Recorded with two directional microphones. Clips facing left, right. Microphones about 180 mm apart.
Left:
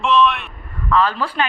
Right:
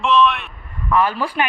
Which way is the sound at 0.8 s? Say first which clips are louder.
Even; 15° right (ahead or behind).